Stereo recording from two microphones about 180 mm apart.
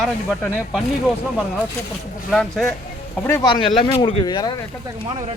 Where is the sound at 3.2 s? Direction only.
20° left (ahead or behind).